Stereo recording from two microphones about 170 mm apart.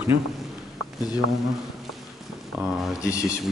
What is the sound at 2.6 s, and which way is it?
Speech, centre (ahead or behind).